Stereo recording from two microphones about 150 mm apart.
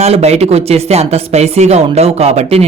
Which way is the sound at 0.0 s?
45° right (ahead or behind).